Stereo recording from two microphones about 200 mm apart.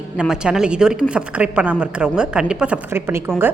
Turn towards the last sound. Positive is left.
turn(degrees=-10)  # may be behind; listen again after turning